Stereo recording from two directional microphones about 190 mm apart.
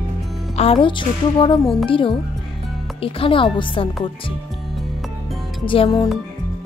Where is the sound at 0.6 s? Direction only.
30° left (ahead or behind).